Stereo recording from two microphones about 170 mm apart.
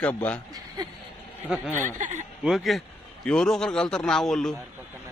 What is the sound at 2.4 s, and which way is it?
A man's voice, centre (ahead or behind).